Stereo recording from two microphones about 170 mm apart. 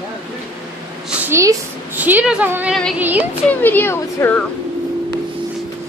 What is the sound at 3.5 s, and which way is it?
Speech, 10° left (ahead or behind).